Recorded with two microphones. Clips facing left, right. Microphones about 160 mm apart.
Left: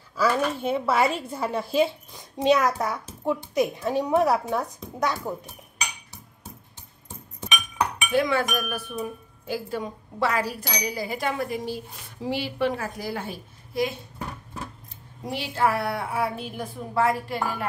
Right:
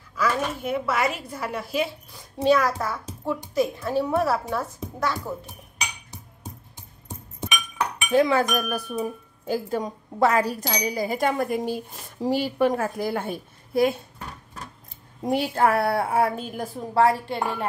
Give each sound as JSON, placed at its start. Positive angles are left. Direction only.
{"t": 0.1, "sound": "a woman's voice", "side_deg": 30}
{"t": 5.3, "sound": "dishes", "side_deg": 20}
{"t": 8.1, "sound": "speech", "side_deg": -35}
{"t": 15.2, "sound": "a woman's voice", "side_deg": -50}